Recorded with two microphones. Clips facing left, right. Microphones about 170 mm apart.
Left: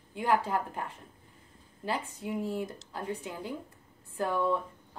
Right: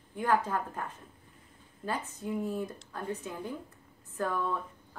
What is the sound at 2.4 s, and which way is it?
Speech, 25° left (ahead or behind).